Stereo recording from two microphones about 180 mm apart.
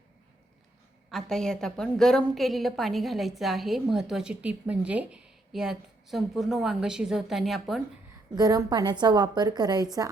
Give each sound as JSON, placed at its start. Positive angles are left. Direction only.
{"t": 1.1, "sound": "a woman's voice", "side_deg": 5}
{"t": 8.4, "sound": "a woman's voice", "side_deg": -20}